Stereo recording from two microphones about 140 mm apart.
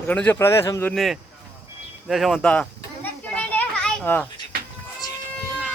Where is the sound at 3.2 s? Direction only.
10° left (ahead or behind).